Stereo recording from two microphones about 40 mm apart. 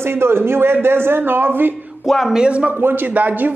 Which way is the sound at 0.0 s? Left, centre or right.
Right.